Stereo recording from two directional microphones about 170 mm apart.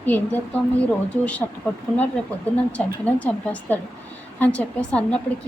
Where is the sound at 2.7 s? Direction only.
10° left (ahead or behind).